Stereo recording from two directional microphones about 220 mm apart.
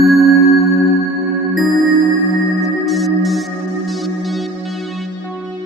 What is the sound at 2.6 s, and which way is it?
Music, centre (ahead or behind).